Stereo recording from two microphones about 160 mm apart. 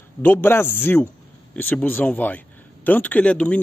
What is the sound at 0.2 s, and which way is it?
A man's voice, 15° left (ahead or behind).